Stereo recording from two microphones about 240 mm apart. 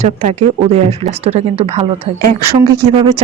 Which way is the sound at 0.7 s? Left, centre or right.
Right.